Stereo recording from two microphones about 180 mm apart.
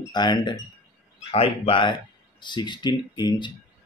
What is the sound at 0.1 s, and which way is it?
Speech, 25° left (ahead or behind).